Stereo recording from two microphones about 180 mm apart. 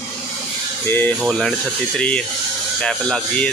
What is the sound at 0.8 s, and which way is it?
Speech, 10° left (ahead or behind).